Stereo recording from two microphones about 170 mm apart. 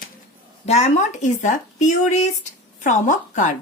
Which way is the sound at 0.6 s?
40° left (ahead or behind).